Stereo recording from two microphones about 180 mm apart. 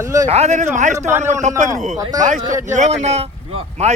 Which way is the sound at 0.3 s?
35° right (ahead or behind).